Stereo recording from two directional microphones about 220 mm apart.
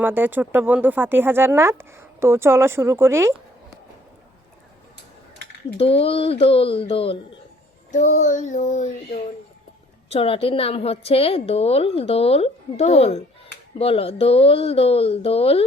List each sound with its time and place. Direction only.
0.0 s speech: 10° right (ahead or behind)
5.7 s a woman's voice: 25° left (ahead or behind)
7.9 s child singing: 35° left (ahead or behind)
10.1 s a woman's voice: 25° left (ahead or behind)